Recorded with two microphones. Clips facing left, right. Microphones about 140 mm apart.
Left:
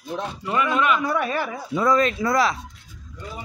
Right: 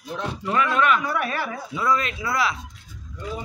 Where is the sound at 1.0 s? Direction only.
25° left (ahead or behind).